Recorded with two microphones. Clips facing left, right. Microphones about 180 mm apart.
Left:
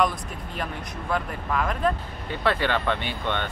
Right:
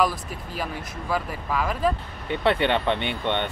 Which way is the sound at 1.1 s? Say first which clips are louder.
Even; 5° right (ahead or behind).